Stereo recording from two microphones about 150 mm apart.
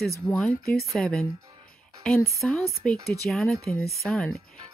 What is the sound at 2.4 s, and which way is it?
Speech, 5° left (ahead or behind).